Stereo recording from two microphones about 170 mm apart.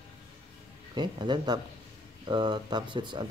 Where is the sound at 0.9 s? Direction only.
25° right (ahead or behind).